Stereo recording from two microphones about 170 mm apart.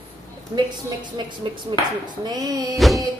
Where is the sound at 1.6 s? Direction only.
25° right (ahead or behind).